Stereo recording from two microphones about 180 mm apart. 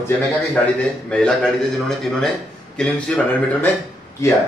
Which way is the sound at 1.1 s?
5° left (ahead or behind).